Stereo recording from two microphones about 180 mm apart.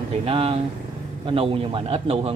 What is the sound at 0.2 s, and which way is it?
Speech, 30° right (ahead or behind).